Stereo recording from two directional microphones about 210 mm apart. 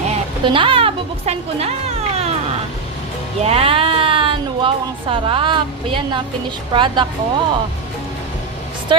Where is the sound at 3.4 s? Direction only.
30° right (ahead or behind).